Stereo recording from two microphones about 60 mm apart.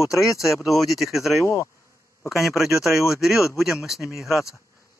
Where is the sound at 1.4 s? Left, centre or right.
Left.